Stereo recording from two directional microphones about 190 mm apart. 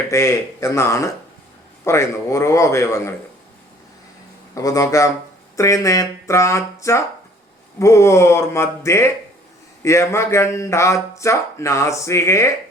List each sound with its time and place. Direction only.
0.1 s speech: 15° left (ahead or behind)
4.5 s speech: 15° left (ahead or behind)